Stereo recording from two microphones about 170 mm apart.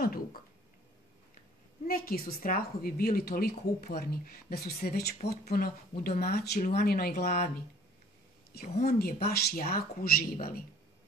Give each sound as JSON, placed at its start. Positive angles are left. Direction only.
{"t": 0.0, "sound": "speech", "side_deg": 60}
{"t": 1.9, "sound": "a woman's voice", "side_deg": 60}
{"t": 8.5, "sound": "a woman's voice", "side_deg": 70}